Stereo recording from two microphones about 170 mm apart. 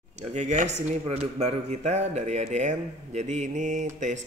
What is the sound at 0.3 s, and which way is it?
Speech, 45° right (ahead or behind).